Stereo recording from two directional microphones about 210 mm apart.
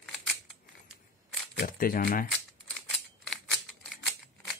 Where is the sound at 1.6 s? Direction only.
45° left (ahead or behind).